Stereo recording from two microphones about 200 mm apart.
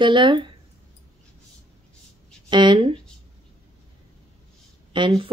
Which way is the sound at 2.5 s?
25° right (ahead or behind).